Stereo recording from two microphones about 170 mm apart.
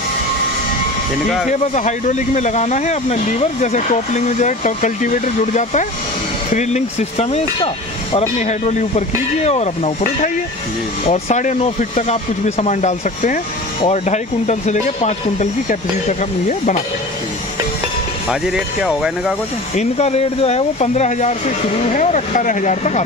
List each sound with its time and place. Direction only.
1.8 s speech: 45° left (ahead or behind)
18.3 s speech: 5° right (ahead or behind)
19.7 s speech: 40° left (ahead or behind)